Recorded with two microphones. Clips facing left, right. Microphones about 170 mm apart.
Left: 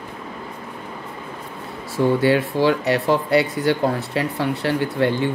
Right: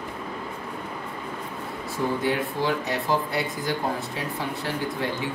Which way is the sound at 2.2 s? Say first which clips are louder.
Left 8 dB; 75° left (ahead or behind).